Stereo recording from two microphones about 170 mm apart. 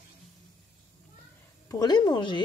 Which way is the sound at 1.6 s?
25° left (ahead or behind).